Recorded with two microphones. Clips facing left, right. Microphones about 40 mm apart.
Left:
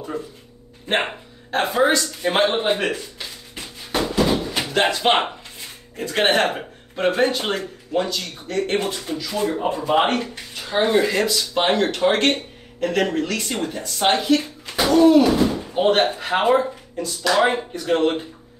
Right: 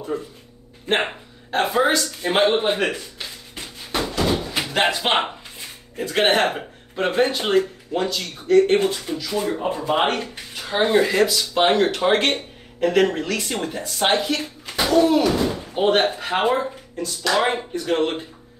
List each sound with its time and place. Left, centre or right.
0.8 s speech: centre
2.8 s drawer open or close: centre
4.3 s slam: centre
5.9 s speech: centre